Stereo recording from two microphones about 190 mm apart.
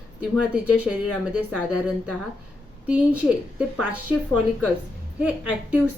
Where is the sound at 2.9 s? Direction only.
5° right (ahead or behind).